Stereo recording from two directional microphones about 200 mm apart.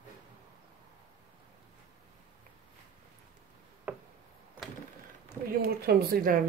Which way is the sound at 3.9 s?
10° right (ahead or behind).